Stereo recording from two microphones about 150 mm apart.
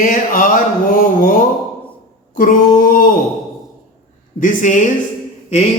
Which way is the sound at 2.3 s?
65° left (ahead or behind).